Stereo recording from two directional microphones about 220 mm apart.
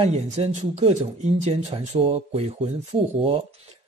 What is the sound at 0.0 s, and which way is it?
A man's voice, 30° right (ahead or behind).